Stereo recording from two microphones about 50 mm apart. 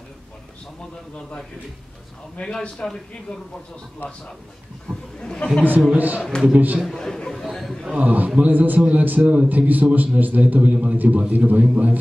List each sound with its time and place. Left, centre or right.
2.3 s a man's voice: centre
4.9 s chatter: centre
5.2 s speech: left
5.9 s a man's voice: right
6.9 s chatter: centre
7.5 s a sound: centre
8.0 s a man's voice: right